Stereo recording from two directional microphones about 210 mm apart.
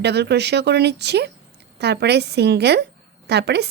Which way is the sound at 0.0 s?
50° right (ahead or behind).